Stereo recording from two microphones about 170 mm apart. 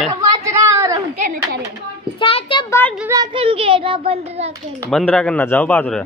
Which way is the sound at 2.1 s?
30° left (ahead or behind).